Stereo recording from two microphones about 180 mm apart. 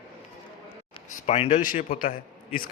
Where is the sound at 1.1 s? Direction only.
40° left (ahead or behind).